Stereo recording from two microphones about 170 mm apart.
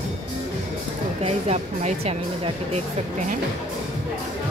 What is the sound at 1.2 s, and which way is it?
Speech, 40° right (ahead or behind).